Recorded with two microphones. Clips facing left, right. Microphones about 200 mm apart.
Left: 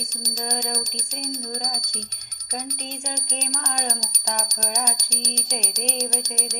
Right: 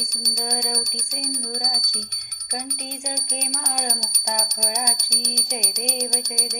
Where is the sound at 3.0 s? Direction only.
30° left (ahead or behind).